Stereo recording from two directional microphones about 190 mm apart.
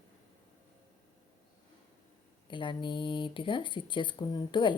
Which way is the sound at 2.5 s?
25° left (ahead or behind).